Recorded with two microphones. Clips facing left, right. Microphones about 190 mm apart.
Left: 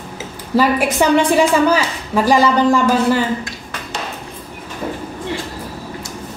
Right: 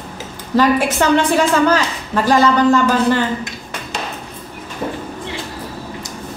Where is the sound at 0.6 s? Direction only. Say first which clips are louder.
Even; 10° left (ahead or behind).